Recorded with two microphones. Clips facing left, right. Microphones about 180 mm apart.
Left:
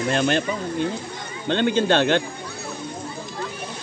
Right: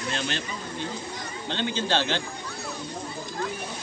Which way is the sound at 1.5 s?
55° left (ahead or behind).